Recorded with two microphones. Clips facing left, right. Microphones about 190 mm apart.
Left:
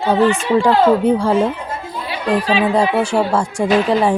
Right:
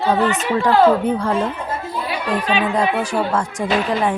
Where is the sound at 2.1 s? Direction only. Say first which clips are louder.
Left 4 dB; 35° left (ahead or behind).